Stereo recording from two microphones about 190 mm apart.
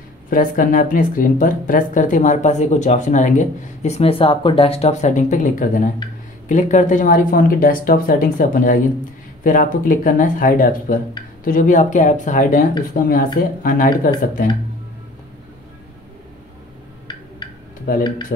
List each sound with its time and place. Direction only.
0.3 s speech: 45° left (ahead or behind)
17.9 s speech: 50° left (ahead or behind)